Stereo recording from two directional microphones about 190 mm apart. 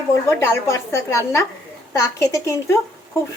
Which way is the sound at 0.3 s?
15° left (ahead or behind).